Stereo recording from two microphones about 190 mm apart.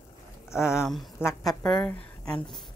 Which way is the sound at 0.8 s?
Centre (ahead or behind).